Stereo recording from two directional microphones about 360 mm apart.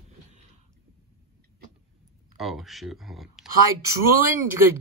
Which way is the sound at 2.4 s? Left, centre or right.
Centre.